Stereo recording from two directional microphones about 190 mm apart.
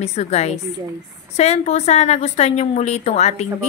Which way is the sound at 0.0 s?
35° left (ahead or behind).